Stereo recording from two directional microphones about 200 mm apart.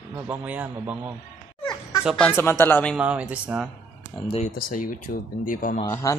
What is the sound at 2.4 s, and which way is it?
Speech, 10° left (ahead or behind).